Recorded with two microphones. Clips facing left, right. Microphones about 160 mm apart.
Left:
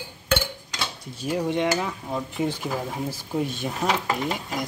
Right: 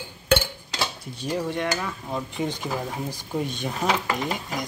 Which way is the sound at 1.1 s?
10° left (ahead or behind).